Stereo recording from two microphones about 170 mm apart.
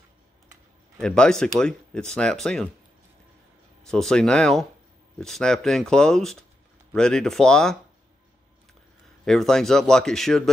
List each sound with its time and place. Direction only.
1.0 s speech: 5° left (ahead or behind)
3.8 s speech: 5° left (ahead or behind)
9.2 s speech: 5° left (ahead or behind)